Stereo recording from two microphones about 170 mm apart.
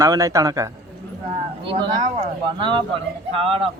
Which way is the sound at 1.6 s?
30° right (ahead or behind).